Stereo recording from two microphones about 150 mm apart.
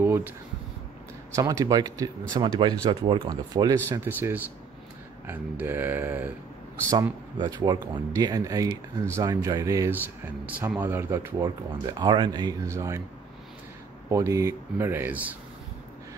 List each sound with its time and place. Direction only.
0.0 s a sound: 15° right (ahead or behind)
1.3 s speech: 20° right (ahead or behind)
4.0 s speech: 15° right (ahead or behind)
6.9 s speech: 25° right (ahead or behind)
11.4 s speech: 25° right (ahead or behind)
14.1 s speech: 20° right (ahead or behind)